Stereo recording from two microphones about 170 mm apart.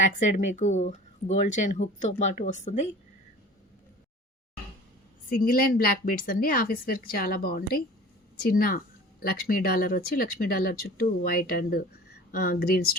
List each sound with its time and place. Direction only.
0.0 s speech: 45° left (ahead or behind)
5.3 s speech: 55° left (ahead or behind)